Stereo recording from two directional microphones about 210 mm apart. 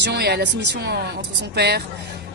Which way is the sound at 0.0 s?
50° right (ahead or behind).